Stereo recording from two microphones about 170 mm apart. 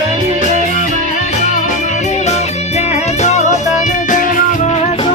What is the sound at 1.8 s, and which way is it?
Music, 40° left (ahead or behind).